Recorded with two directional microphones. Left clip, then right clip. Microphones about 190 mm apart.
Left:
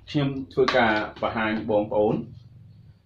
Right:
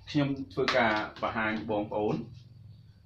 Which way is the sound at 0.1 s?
20° right (ahead or behind).